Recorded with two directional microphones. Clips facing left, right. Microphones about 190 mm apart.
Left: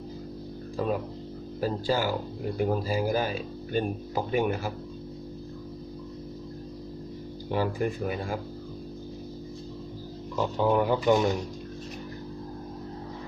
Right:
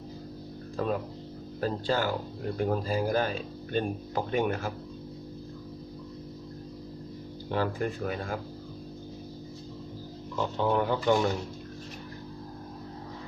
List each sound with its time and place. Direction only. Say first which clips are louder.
0.8 s speech: left 1 dB; 10° left (ahead or behind)
7.5 s speech: left 2 dB; 10° left (ahead or behind)
10.3 s speech: left 3 dB; 10° left (ahead or behind)